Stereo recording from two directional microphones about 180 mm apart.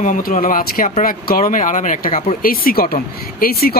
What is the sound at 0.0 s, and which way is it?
Speech, 45° left (ahead or behind).